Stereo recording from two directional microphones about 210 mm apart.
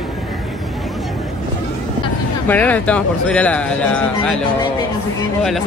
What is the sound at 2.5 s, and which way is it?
Speech, 5° left (ahead or behind).